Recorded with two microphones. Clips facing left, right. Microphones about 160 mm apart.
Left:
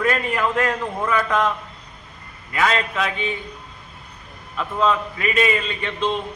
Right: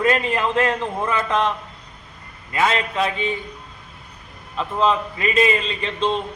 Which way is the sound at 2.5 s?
25° right (ahead or behind).